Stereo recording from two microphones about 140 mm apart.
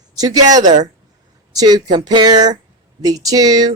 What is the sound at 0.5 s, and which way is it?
Speech, 60° right (ahead or behind).